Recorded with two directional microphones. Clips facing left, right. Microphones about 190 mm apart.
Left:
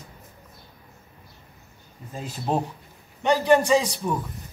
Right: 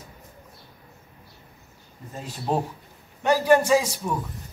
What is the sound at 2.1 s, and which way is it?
A man's voice, centre (ahead or behind).